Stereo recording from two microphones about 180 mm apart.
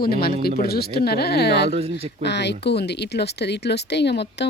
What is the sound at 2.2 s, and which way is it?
Speech, 70° left (ahead or behind).